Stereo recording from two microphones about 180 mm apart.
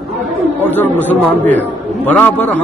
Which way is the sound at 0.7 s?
10° left (ahead or behind).